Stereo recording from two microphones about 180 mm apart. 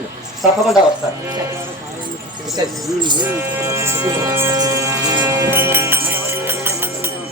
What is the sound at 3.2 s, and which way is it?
Speech, 10° right (ahead or behind).